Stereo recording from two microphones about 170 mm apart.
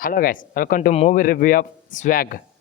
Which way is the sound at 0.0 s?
55° left (ahead or behind).